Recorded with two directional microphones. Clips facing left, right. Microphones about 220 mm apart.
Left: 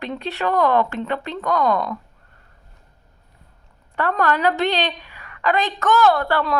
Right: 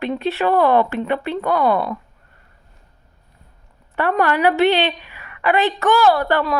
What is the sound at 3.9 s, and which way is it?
Speech, 15° right (ahead or behind).